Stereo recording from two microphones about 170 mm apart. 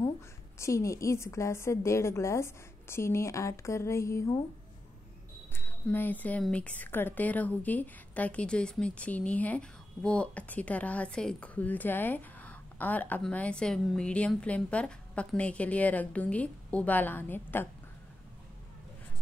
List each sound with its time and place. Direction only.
0.6 s a woman's voice: 15° left (ahead or behind)
5.5 s a woman's voice: 10° left (ahead or behind)